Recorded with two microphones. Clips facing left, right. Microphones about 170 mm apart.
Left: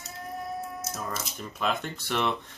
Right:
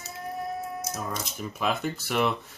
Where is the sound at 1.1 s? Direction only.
5° right (ahead or behind).